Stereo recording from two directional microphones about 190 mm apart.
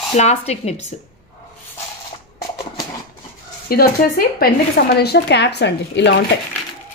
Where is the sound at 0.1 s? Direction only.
35° left (ahead or behind).